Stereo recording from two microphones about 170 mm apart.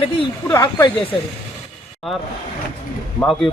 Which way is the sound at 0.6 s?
25° left (ahead or behind).